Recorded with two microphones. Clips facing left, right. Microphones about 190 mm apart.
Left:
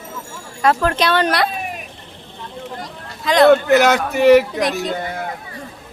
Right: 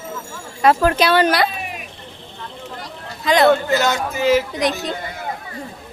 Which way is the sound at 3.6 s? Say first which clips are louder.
Left 5 dB; 65° left (ahead or behind).